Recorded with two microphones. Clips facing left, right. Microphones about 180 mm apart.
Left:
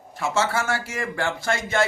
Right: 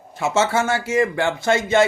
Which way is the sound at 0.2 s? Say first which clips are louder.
Right 5 dB; 20° right (ahead or behind).